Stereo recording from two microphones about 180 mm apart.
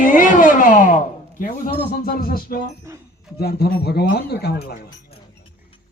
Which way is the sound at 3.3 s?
60° left (ahead or behind).